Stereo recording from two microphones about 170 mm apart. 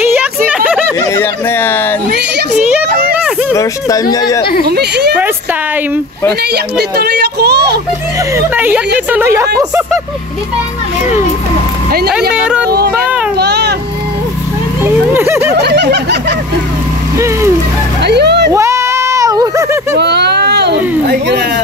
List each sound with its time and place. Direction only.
1.1 s speech: 15° left (ahead or behind)
2.0 s a sound: 75° right (ahead or behind)
3.5 s speech: 20° left (ahead or behind)
4.6 s a woman's voice: 75° right (ahead or behind)
6.5 s a woman's voice: 70° right (ahead or behind)
8.5 s speech: 10° right (ahead or behind)
13.4 s a sound: 75° right (ahead or behind)
14.8 s speech: 15° right (ahead or behind)
15.6 s snicker: 80° right
18.0 s music: 80° right
18.5 s a sound: 15° right (ahead or behind)
20.0 s a sound: 75° right (ahead or behind)